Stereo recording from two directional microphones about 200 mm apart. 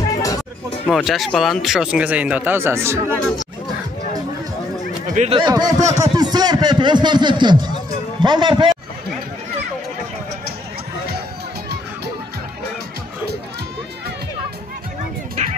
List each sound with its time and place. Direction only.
0.1 s chatter: 20° left (ahead or behind)
0.8 s speech: centre (ahead or behind)
5.1 s speech: 35° right (ahead or behind)
5.4 s a man's voice: 20° right (ahead or behind)